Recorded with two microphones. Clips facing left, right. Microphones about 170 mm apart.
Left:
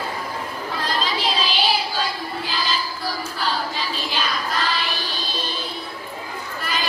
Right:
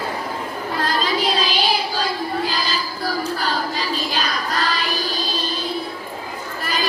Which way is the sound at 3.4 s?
45° right (ahead or behind).